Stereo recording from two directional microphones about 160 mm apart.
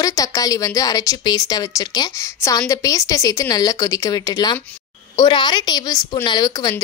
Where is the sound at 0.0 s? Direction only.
20° left (ahead or behind).